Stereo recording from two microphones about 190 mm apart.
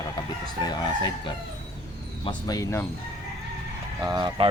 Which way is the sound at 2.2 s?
20° left (ahead or behind).